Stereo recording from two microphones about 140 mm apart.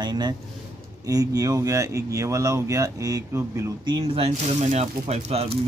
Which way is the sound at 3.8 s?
40° right (ahead or behind).